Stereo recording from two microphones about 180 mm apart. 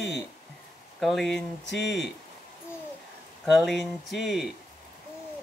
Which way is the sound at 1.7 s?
75° left (ahead or behind).